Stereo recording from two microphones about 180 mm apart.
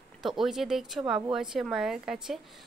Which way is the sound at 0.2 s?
Centre (ahead or behind).